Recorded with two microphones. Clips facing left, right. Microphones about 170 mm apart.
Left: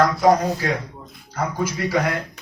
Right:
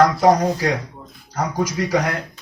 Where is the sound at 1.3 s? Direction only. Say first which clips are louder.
Right 2 dB; 40° right (ahead or behind).